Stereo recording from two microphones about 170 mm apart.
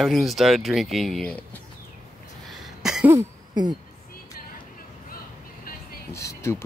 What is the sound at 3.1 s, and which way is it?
Cough, 20° right (ahead or behind).